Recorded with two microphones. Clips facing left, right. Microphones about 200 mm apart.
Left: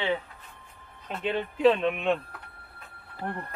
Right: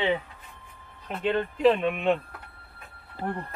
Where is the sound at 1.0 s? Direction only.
Centre (ahead or behind).